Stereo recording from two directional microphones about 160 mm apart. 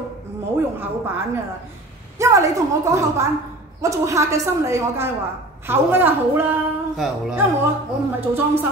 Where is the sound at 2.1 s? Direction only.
20° right (ahead or behind); by 7.4 s 5° right (ahead or behind).